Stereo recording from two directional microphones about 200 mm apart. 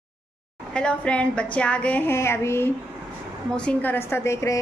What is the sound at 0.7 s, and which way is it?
A woman's voice, 5° left (ahead or behind).